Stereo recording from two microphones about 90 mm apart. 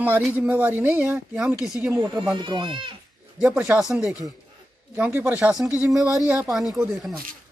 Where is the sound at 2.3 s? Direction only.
60° right (ahead or behind).